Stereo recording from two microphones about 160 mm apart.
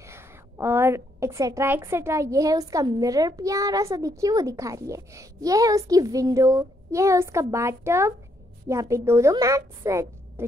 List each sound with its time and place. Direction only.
0.0 s a woman's voice: 15° right (ahead or behind)